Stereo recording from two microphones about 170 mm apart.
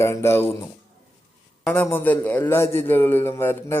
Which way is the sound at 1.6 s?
10° left (ahead or behind).